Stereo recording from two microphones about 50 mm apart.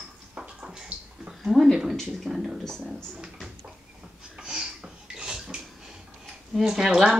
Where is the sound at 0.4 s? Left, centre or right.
Centre.